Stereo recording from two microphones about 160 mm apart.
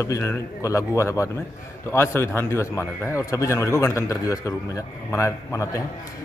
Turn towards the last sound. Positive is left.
turn(degrees=20)  # may be behind; listen again after turning